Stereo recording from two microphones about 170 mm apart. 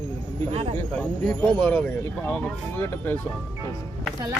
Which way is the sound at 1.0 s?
5° left (ahead or behind).